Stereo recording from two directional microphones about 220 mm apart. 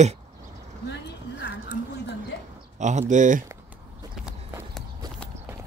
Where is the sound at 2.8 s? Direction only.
35° right (ahead or behind).